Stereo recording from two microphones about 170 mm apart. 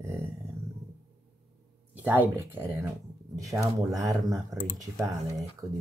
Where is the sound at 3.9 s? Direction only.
20° right (ahead or behind).